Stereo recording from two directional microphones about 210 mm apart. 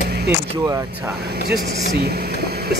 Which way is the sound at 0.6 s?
15° right (ahead or behind).